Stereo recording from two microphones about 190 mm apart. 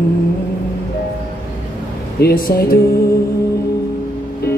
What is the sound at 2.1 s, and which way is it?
Speech, 55° left (ahead or behind).